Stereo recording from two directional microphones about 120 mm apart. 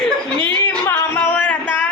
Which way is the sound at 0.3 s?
40° right (ahead or behind).